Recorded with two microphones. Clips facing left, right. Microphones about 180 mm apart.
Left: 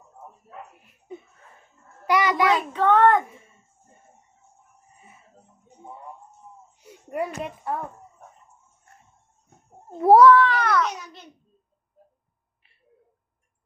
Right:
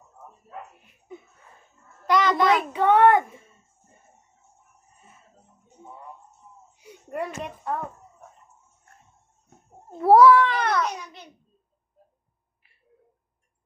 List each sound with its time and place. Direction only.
2.0 s a child's voice: 10° left (ahead or behind)
2.7 s a child's voice: 15° right (ahead or behind)
6.8 s speech: 5° left (ahead or behind)
9.9 s a child's voice: 20° left (ahead or behind)
10.2 s a child's voice: 5° right (ahead or behind)
10.4 s a child's voice: 20° right (ahead or behind)